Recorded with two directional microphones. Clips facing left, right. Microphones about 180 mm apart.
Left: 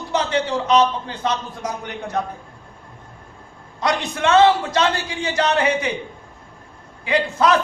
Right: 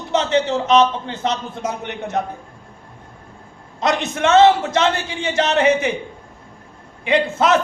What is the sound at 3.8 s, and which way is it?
A man's voice, 20° right (ahead or behind).